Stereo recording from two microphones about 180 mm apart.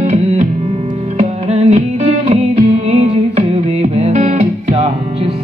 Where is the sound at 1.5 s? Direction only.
35° right (ahead or behind).